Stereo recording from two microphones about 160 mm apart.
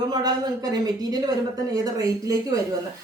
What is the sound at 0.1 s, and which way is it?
Speech, 25° right (ahead or behind).